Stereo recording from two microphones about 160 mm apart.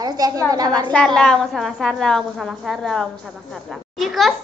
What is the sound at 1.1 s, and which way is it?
A woman's voice, 5° left (ahead or behind).